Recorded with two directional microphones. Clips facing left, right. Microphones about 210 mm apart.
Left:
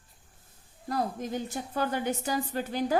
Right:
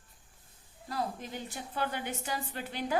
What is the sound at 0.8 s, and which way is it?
Speech, 45° left (ahead or behind).